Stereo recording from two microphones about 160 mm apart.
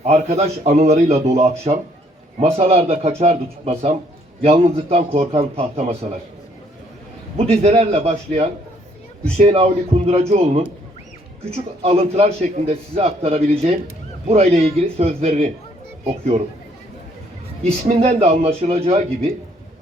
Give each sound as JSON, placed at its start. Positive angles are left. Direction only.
{"t": 0.0, "sound": "a man's voice", "side_deg": -45}
{"t": 7.5, "sound": "a man's voice", "side_deg": -40}
{"t": 17.7, "sound": "a man's voice", "side_deg": -40}